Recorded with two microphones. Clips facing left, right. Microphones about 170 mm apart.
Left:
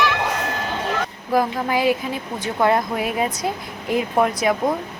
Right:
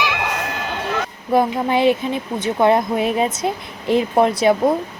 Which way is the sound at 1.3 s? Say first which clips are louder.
Right 3 dB; 25° right (ahead or behind).